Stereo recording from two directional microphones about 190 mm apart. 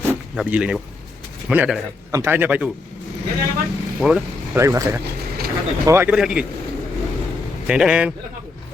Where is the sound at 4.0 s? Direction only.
5° right (ahead or behind).